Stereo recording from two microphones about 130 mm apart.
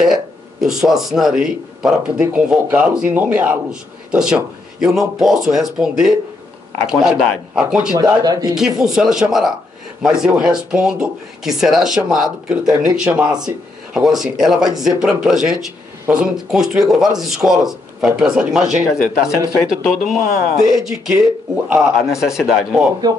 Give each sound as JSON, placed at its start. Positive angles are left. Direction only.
{"t": 0.0, "sound": "a man's voice", "side_deg": -5}
{"t": 8.0, "sound": "speech", "side_deg": -30}
{"t": 8.5, "sound": "a man's voice", "side_deg": -5}